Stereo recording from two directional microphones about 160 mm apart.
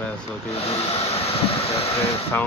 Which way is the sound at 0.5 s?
40° left (ahead or behind).